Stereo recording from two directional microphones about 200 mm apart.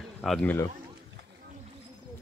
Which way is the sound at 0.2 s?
5° left (ahead or behind).